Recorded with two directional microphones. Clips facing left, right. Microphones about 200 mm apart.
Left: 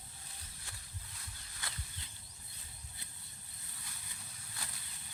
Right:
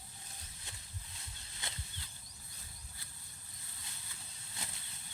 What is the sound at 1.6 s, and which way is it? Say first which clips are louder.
Bird flight: right 1 dB; 20° right (ahead or behind).